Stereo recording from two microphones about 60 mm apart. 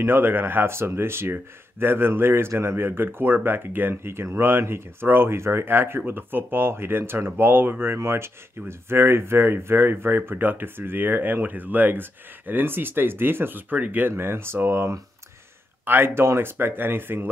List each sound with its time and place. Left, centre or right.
0.0 s speech: right
14.1 s speech: right